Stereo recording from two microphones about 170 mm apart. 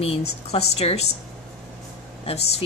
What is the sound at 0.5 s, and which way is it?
Speech, 35° left (ahead or behind).